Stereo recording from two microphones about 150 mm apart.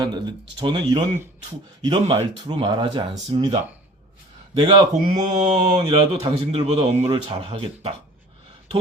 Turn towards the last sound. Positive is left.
turn(degrees=-40)  # may be behind; listen again after turning